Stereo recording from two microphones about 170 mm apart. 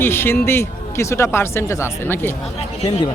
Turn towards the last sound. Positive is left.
turn(degrees=35)  # may be behind; listen again after turning